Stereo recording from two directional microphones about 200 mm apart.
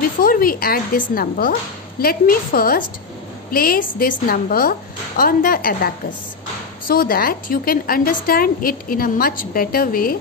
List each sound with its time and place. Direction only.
0.2 s a woman's voice: 45° left (ahead or behind)
6.9 s a woman's voice: 45° left (ahead or behind)